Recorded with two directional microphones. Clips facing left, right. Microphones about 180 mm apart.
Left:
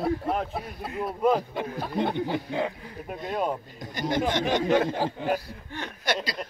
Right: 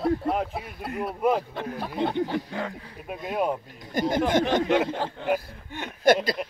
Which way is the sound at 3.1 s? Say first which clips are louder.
Right 2 dB; 10° right (ahead or behind).